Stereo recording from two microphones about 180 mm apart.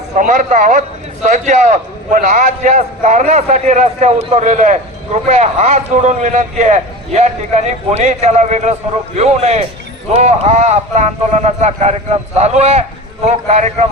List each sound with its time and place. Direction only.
0.2 s a man's voice: 45° right (ahead or behind)